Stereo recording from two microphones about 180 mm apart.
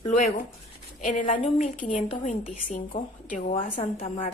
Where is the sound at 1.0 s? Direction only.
45° left (ahead or behind).